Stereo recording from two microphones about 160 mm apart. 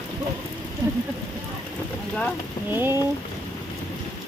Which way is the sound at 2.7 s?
15° right (ahead or behind).